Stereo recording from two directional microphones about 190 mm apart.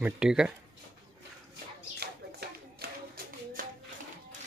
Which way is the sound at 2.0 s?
55° right (ahead or behind).